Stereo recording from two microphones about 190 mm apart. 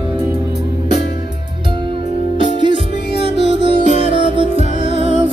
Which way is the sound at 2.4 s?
25° right (ahead or behind).